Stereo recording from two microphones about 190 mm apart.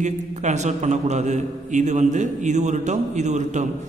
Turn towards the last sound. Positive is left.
turn(degrees=-40)  # may be behind; listen again after turning